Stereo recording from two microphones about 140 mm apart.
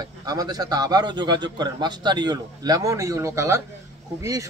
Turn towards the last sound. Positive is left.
turn(degrees=-25)  # may be behind; listen again after turning